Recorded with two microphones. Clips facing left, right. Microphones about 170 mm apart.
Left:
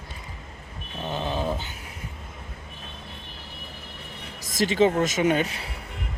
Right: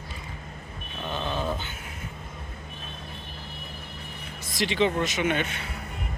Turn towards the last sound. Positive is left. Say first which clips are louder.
# left 4 dB
turn(degrees=35)  # may be behind; listen again after turning